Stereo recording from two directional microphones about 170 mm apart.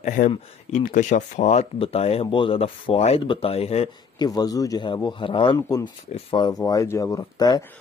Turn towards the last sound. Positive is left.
turn(degrees=20)  # may be behind; listen again after turning